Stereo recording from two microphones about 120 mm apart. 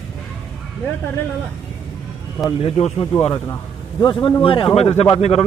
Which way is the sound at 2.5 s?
55° left (ahead or behind).